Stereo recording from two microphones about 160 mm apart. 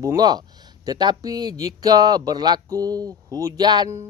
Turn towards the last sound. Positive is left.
turn(degrees=-20)  # may be behind; listen again after turning